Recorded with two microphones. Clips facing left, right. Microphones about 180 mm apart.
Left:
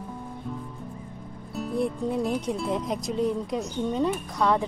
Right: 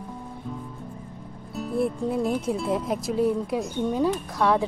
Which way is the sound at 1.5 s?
Centre (ahead or behind).